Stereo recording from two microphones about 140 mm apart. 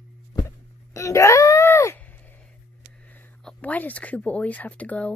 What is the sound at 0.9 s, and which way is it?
Wail, 20° left (ahead or behind).